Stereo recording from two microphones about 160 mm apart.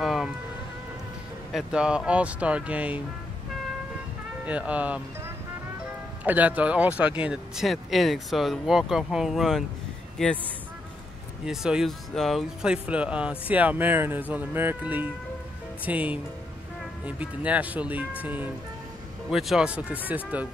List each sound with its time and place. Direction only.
0.0 s a sound: centre (ahead or behind)
1.5 s speech: 5° right (ahead or behind)
4.5 s speech: 10° right (ahead or behind)
6.2 s speech: 10° right (ahead or behind)
11.4 s speech: 5° right (ahead or behind)